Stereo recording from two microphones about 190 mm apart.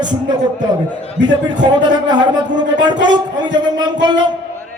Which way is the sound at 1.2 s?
70° right (ahead or behind).